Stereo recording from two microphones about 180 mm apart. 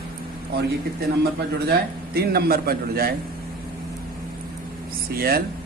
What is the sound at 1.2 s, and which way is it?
A man's voice, 60° right (ahead or behind).